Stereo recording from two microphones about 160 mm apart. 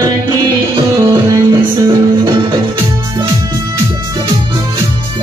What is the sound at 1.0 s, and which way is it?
Music, 25° right (ahead or behind).